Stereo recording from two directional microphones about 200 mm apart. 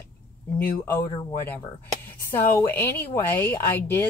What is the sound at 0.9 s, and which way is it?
A woman's voice, 10° left (ahead or behind).